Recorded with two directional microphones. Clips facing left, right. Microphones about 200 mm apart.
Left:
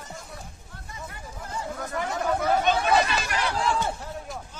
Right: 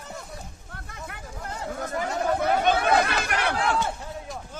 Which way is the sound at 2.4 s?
60° right (ahead or behind).